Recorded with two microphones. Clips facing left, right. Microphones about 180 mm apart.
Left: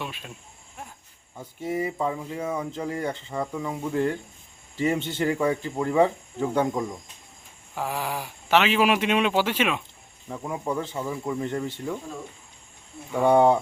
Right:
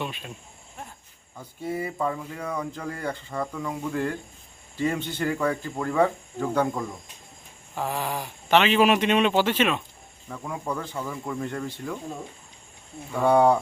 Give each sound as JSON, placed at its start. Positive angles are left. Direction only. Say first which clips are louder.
{"t": 0.0, "sound": "cricket", "louder": "right 2 dB", "side_deg": 0}
{"t": 1.4, "sound": "speech", "louder": "left 2 dB", "side_deg": 20}
{"t": 13.1, "sound": "speech", "louder": "left 1 dB", "side_deg": 20}